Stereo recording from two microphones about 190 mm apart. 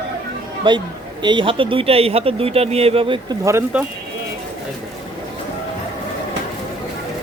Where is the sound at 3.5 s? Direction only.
15° right (ahead or behind).